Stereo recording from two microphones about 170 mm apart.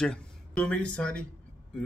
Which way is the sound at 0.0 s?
5° left (ahead or behind).